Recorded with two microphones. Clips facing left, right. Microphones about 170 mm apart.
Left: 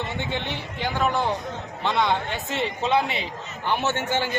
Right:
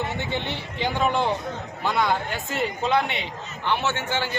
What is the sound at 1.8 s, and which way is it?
A man's voice, 5° right (ahead or behind).